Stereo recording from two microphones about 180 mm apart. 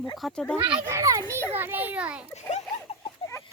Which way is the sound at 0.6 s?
15° right (ahead or behind).